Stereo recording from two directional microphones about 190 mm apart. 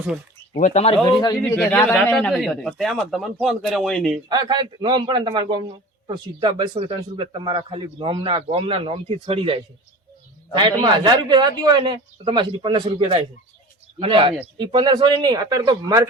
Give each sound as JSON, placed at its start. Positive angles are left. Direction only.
{"t": 0.5, "sound": "speech", "side_deg": 40}
{"t": 1.0, "sound": "speech", "side_deg": 20}
{"t": 1.4, "sound": "speech", "side_deg": 10}
{"t": 4.3, "sound": "a man's voice", "side_deg": -25}